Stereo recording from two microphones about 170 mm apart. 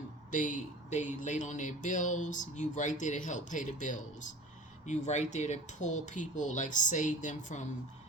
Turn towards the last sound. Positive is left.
turn(degrees=45)  # may be behind; listen again after turning